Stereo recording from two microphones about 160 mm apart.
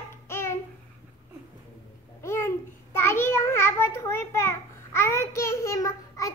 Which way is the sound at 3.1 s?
15° left (ahead or behind).